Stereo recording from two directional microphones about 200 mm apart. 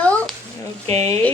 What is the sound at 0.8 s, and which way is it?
Speech, 30° right (ahead or behind).